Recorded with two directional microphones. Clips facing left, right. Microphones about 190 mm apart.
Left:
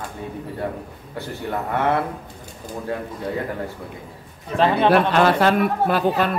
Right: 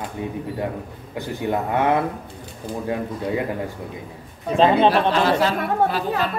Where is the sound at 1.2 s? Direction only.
15° right (ahead or behind).